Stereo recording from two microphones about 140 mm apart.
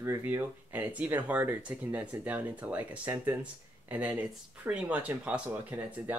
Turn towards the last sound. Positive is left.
turn(degrees=-10)  # may be behind; listen again after turning